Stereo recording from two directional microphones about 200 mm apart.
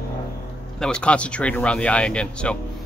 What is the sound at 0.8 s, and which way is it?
Speech, 5° left (ahead or behind).